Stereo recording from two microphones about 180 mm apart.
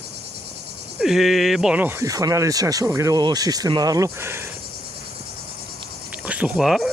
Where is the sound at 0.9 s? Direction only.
Centre (ahead or behind).